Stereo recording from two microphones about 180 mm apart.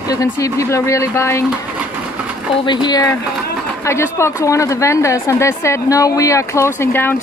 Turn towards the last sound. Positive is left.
turn(degrees=10)  # may be behind; listen again after turning